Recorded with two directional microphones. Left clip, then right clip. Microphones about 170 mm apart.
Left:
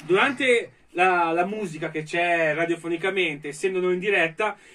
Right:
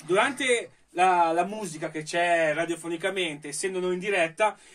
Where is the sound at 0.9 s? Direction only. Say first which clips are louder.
Left 1 dB; 35° right (ahead or behind).